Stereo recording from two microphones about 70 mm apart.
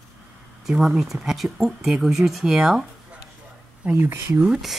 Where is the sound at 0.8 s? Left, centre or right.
Centre.